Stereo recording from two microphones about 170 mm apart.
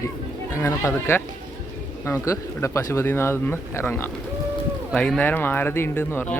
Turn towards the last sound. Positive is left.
turn(degrees=10)  # may be behind; listen again after turning